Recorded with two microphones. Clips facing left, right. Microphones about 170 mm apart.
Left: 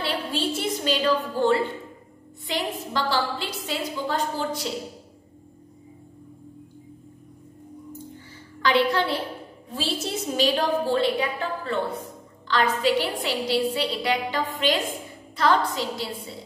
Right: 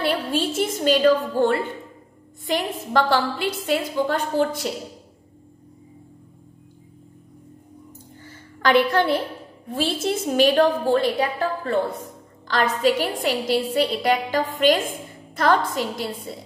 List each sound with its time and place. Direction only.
0.0 s a woman's voice: 50° right (ahead or behind)
8.6 s a woman's voice: 50° right (ahead or behind)